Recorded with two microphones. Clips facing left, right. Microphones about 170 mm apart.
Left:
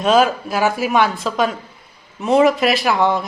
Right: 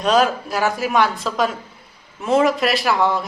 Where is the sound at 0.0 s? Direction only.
5° left (ahead or behind).